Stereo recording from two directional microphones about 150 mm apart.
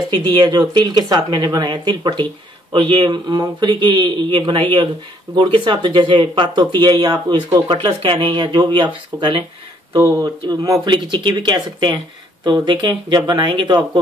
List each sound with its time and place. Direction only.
0.1 s speech: 30° right (ahead or behind)